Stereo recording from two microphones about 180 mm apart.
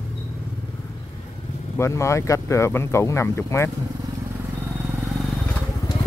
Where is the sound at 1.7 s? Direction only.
15° left (ahead or behind).